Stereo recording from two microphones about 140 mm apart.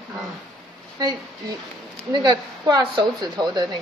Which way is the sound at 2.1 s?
30° right (ahead or behind).